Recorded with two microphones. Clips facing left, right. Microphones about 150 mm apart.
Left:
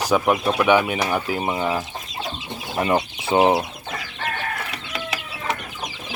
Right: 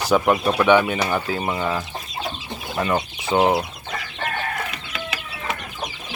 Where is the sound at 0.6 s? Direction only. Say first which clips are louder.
Right 1 dB; 5° left (ahead or behind); by 3.0 s 25° left (ahead or behind).